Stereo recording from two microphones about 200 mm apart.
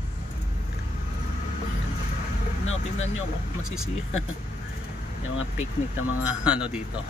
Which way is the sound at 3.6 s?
90° left.